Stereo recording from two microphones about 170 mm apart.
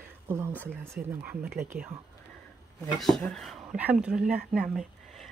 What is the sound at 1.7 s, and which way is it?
Speech, 65° right (ahead or behind).